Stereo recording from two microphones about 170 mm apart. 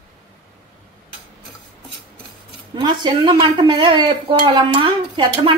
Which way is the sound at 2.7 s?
25° right (ahead or behind).